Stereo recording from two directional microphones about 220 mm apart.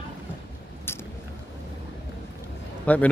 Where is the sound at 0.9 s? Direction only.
10° left (ahead or behind).